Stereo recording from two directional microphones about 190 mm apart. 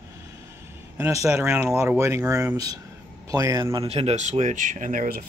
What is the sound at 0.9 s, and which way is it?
Speech, 15° right (ahead or behind).